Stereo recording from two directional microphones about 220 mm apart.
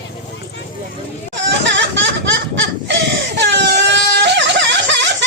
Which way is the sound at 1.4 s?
55° right (ahead or behind).